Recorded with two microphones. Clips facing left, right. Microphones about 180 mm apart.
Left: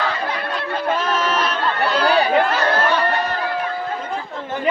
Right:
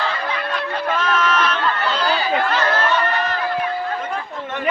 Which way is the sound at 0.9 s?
30° left (ahead or behind).